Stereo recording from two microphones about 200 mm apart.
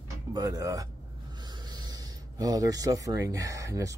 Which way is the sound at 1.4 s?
20° right (ahead or behind).